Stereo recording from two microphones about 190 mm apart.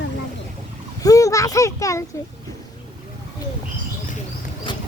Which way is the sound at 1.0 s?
15° left (ahead or behind).